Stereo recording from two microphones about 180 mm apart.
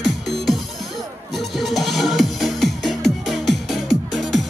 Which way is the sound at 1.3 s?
Centre (ahead or behind).